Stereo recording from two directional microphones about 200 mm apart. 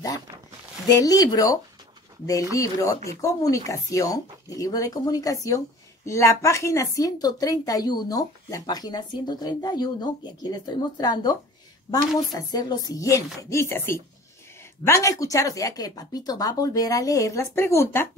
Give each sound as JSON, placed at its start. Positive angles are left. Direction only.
{"t": 0.8, "sound": "a woman's voice", "side_deg": 20}